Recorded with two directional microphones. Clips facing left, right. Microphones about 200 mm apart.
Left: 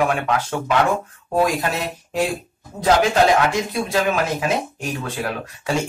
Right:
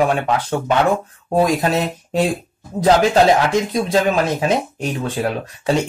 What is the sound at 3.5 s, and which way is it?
Speech, 20° right (ahead or behind).